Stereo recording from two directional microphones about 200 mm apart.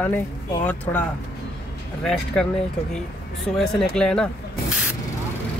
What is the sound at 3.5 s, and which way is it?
Speech, centre (ahead or behind).